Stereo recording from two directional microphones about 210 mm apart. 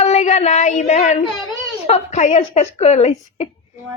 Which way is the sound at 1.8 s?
30° left (ahead or behind).